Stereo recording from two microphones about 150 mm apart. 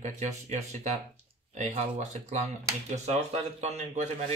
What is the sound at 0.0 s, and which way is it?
Speech, 50° right (ahead or behind).